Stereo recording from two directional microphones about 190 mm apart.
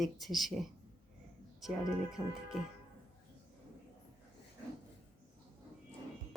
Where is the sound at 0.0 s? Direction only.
Centre (ahead or behind).